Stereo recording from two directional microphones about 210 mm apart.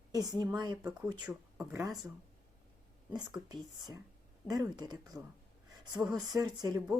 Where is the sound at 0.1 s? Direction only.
20° right (ahead or behind).